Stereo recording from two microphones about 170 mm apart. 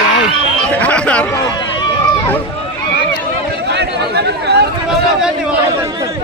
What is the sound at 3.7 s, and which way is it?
Chatter, 80° right.